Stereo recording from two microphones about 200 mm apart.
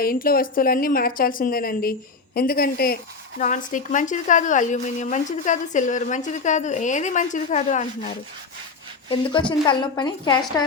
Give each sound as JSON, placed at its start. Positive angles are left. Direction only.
{"t": 0.0, "sound": "a woman's voice", "side_deg": 45}
{"t": 9.5, "sound": "a woman's voice", "side_deg": 20}